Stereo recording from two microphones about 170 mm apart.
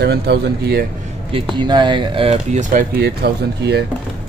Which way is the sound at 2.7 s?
60° right (ahead or behind).